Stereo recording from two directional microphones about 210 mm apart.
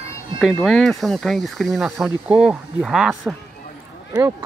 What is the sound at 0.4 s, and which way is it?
Speech, centre (ahead or behind).